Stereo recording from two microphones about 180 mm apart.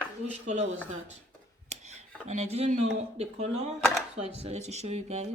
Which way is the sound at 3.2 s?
40° right (ahead or behind).